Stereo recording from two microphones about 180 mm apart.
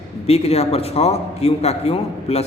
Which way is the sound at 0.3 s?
35° left (ahead or behind).